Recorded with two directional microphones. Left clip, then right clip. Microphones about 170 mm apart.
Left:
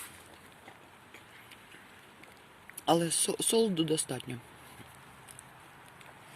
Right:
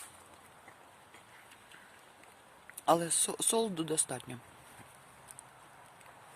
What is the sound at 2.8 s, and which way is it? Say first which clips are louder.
Speech: left 1 dB; centre (ahead or behind).